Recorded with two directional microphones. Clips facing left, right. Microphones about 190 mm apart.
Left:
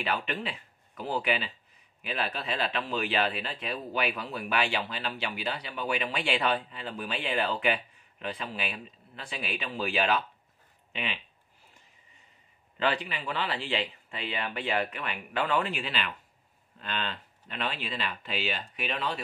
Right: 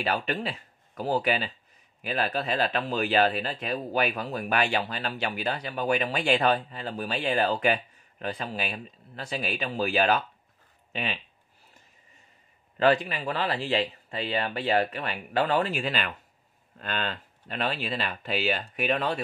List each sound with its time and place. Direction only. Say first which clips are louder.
0.0 s speech: right 3 dB; 40° right (ahead or behind)
12.7 s speech: right 7 dB; 40° right (ahead or behind)